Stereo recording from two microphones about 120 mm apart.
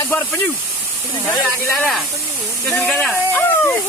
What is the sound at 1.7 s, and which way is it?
Speech, centre (ahead or behind).